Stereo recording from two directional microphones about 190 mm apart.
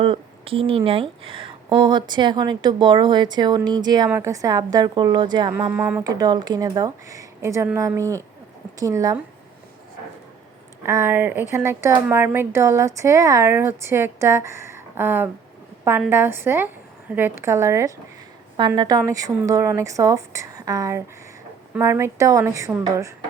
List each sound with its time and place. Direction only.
0.0 s speech: 30° right (ahead or behind)
5.7 s speech: 10° right (ahead or behind)
10.8 s speech: 15° right (ahead or behind)